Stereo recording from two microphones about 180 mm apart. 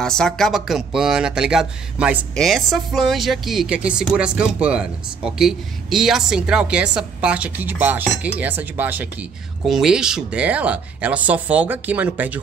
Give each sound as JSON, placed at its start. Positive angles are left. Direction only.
{"t": 0.0, "sound": "speech", "side_deg": 5}